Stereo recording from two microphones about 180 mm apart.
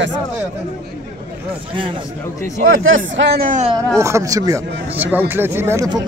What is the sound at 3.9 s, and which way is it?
Speech, 15° right (ahead or behind).